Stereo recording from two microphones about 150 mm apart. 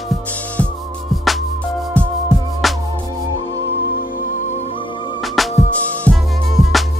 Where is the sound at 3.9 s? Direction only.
70° left (ahead or behind); by 4.7 s 50° left (ahead or behind).